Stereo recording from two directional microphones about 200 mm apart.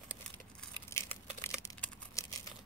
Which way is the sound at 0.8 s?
15° left (ahead or behind).